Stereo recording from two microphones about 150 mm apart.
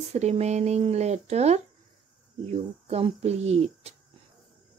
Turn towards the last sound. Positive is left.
turn(degrees=-45)  # may be behind; listen again after turning